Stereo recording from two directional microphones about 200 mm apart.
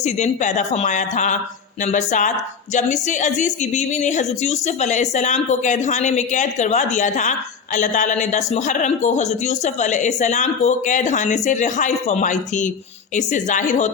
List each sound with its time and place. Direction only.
0.0 s speech: 35° left (ahead or behind)